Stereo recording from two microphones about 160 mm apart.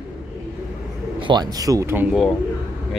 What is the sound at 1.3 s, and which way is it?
Speech, 25° right (ahead or behind).